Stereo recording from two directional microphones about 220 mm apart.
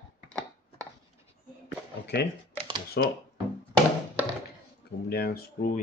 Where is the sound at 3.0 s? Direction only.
50° left (ahead or behind).